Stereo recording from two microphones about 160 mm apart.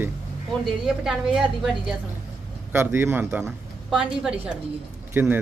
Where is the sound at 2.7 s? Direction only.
15° right (ahead or behind).